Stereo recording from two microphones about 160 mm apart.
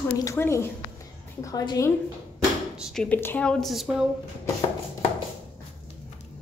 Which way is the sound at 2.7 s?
5° right (ahead or behind).